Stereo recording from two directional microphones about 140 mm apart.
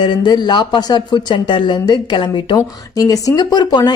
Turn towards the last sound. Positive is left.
turn(degrees=30)  # may be behind; listen again after turning